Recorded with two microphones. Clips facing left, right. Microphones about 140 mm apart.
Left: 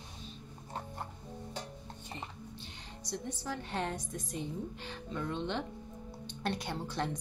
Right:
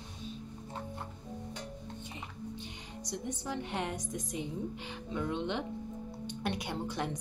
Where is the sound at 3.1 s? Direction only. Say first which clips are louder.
Right 1 dB; 20° right (ahead or behind).